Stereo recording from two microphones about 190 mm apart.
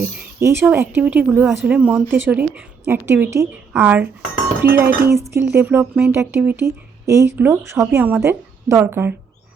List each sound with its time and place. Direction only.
0.0 s speech: 15° right (ahead or behind)